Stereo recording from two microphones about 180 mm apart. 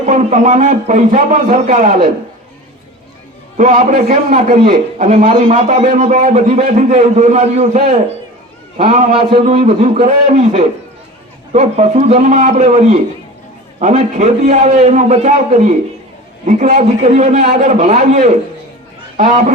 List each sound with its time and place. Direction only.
0.0 s a man's voice: 40° right (ahead or behind)
3.6 s a man's voice: 45° right (ahead or behind)
9.1 s a man's voice: 35° right (ahead or behind)